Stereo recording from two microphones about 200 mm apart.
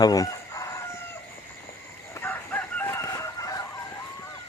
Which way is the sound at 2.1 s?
10° left (ahead or behind).